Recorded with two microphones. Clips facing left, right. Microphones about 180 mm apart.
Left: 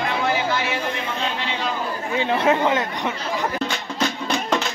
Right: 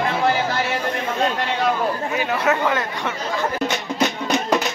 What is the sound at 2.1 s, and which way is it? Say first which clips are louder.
Speech: left 4 dB; 25° left (ahead or behind).